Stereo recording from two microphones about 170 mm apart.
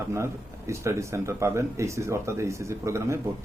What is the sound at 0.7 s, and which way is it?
Speech, 15° right (ahead or behind).